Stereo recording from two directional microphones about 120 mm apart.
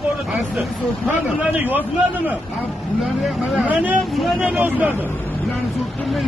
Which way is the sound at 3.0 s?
Centre (ahead or behind).